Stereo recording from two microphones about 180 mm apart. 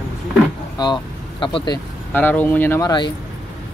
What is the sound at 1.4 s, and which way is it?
Speech, 30° left (ahead or behind).